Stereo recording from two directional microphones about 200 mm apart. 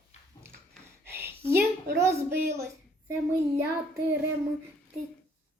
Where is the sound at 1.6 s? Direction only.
55° right (ahead or behind).